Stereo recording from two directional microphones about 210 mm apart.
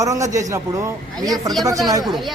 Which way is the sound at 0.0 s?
15° right (ahead or behind).